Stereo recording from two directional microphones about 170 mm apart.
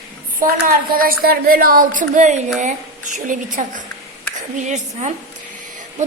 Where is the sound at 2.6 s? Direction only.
50° right (ahead or behind).